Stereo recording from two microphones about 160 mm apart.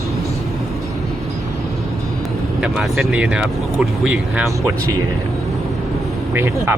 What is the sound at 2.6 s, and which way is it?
Speech, centre (ahead or behind).